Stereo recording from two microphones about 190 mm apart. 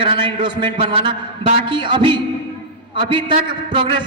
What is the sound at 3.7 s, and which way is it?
Speech, 25° right (ahead or behind).